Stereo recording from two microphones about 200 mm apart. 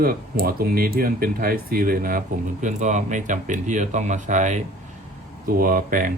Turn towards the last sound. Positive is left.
turn(degrees=-45)  # may be behind; listen again after turning